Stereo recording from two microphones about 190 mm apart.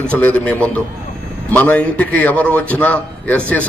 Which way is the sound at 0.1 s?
10° left (ahead or behind).